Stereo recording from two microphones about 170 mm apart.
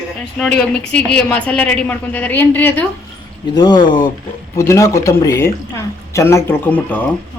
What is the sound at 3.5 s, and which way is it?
A woman's voice, 25° left (ahead or behind).